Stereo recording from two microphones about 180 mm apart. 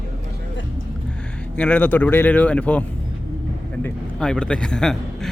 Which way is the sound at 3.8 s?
5° left (ahead or behind).